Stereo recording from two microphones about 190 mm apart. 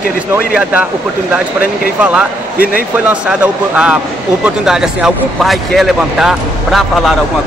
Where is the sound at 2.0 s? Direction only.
5° right (ahead or behind).